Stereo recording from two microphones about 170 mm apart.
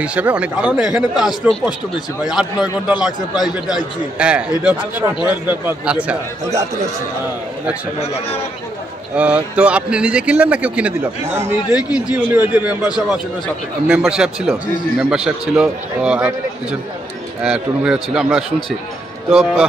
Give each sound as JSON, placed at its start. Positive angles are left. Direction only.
{"t": 0.0, "sound": "a man's voice", "side_deg": -5}
{"t": 3.1, "sound": "a man's voice", "side_deg": 25}
{"t": 3.6, "sound": "speech", "side_deg": -5}
{"t": 8.0, "sound": "a man's voice", "side_deg": 35}
{"t": 9.1, "sound": "a man's voice", "side_deg": -5}
{"t": 17.4, "sound": "a man's voice", "side_deg": -5}